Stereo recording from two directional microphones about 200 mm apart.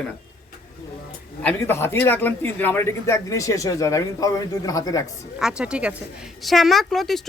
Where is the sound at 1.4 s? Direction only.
10° left (ahead or behind).